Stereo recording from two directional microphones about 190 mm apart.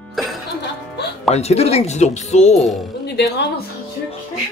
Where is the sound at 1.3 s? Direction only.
35° left (ahead or behind).